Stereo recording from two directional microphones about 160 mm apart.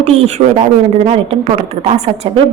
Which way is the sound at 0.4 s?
45° right (ahead or behind).